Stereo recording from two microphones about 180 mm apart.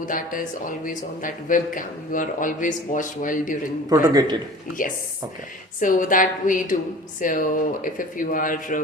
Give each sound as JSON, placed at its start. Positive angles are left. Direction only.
{"t": 0.0, "sound": "speech", "side_deg": 50}
{"t": 3.8, "sound": "a man's voice", "side_deg": -20}
{"t": 5.8, "sound": "speech", "side_deg": 45}